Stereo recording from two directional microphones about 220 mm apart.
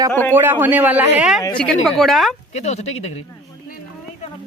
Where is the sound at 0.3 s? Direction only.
10° right (ahead or behind).